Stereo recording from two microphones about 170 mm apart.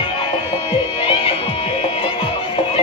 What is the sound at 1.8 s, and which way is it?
Music, 35° left (ahead or behind).